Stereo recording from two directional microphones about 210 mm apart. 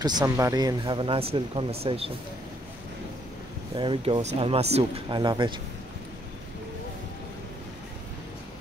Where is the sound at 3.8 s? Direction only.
25° right (ahead or behind).